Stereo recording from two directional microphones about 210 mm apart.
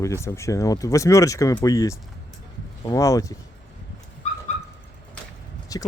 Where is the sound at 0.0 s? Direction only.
15° left (ahead or behind).